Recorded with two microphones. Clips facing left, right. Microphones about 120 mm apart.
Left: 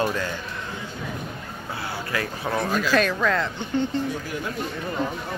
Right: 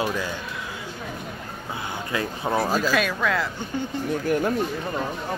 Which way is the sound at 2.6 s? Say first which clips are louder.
Right 1 dB; 35° right (ahead or behind).